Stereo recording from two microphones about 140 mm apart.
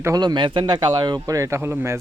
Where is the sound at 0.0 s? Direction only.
25° right (ahead or behind).